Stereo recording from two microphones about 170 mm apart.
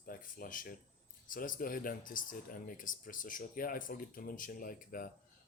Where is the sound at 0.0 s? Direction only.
55° left (ahead or behind).